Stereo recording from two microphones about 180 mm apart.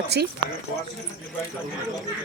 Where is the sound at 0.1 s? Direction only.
70° right (ahead or behind).